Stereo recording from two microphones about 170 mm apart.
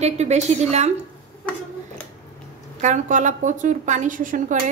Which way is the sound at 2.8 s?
45° right (ahead or behind).